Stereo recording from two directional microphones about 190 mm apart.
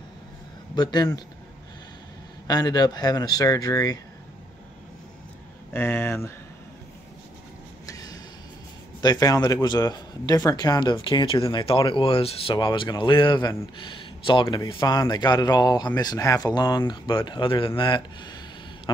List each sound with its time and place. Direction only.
0.7 s a man's voice: 20° left (ahead or behind)
2.4 s a man's voice: 20° left (ahead or behind)
5.7 s speech: 10° left (ahead or behind)
7.8 s a sound: 20° left (ahead or behind)
9.0 s a man's voice: 20° left (ahead or behind)